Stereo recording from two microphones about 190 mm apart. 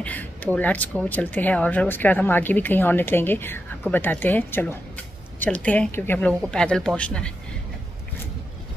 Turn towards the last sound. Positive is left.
turn(degrees=5)  # may be behind; listen again after turning